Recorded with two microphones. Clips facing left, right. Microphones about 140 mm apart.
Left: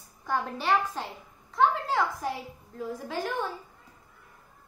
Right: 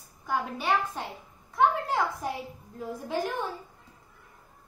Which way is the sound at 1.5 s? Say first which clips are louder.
Even; 15° right (ahead or behind).